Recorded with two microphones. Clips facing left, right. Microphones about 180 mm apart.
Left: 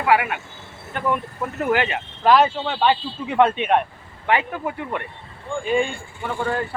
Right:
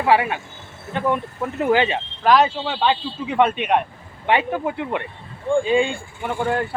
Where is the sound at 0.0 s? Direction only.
30° right (ahead or behind).